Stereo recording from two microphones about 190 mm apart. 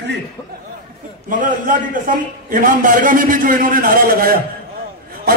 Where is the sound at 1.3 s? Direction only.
45° right (ahead or behind).